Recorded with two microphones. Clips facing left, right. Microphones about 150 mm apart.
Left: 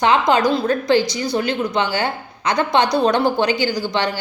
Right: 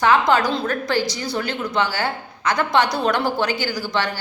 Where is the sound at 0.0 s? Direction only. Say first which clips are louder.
Left 2 dB; 20° left (ahead or behind).